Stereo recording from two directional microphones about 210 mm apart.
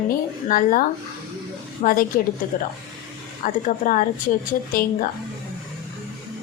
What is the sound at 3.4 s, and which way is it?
Speech, 40° left (ahead or behind).